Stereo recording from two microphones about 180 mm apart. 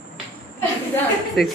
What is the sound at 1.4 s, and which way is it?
Speech, centre (ahead or behind).